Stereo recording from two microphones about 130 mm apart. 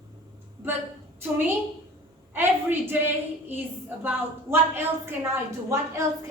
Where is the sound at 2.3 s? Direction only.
15° right (ahead or behind).